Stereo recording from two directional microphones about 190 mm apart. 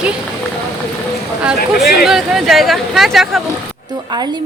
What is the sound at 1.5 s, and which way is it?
Speech, centre (ahead or behind).